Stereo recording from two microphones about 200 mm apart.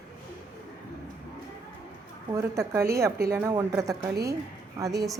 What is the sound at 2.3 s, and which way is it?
A woman's voice, 15° right (ahead or behind).